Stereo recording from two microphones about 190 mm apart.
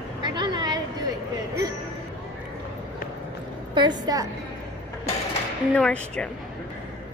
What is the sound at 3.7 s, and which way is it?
Speech, 20° right (ahead or behind).